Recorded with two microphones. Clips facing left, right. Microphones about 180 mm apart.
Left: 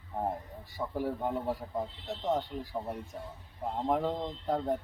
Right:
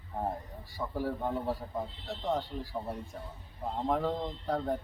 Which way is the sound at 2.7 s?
10° left (ahead or behind).